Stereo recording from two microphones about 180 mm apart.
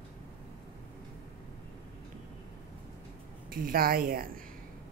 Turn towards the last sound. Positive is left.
turn(degrees=-55)  # may be behind; listen again after turning